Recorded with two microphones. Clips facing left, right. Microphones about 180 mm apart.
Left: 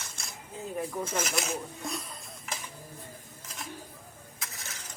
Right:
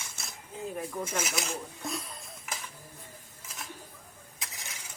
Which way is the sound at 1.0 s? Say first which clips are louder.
Left 2 dB; 10° right (ahead or behind).